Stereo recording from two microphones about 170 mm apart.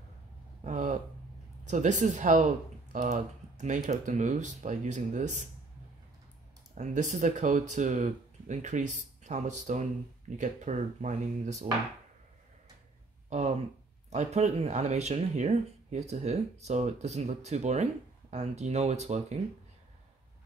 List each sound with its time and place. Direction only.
0.7 s speech: 45° right (ahead or behind)
6.7 s speech: 45° right (ahead or behind)
13.3 s speech: 40° right (ahead or behind)